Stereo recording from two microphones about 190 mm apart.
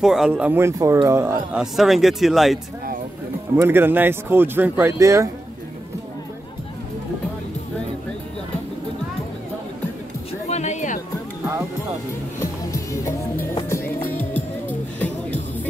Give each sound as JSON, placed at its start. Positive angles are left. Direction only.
{"t": 0.0, "sound": "speech", "side_deg": 0}
{"t": 3.5, "sound": "speech", "side_deg": -10}
{"t": 10.5, "sound": "music", "side_deg": 40}
{"t": 12.4, "sound": "music", "side_deg": 15}